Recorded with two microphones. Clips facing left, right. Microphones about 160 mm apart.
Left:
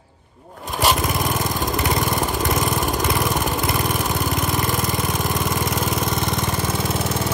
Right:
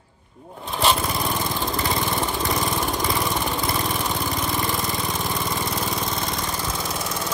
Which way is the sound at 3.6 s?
Centre (ahead or behind).